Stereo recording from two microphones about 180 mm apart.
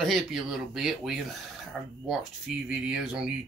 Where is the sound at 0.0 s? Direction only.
Centre (ahead or behind).